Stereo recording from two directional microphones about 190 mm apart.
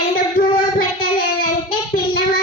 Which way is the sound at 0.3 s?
50° left (ahead or behind).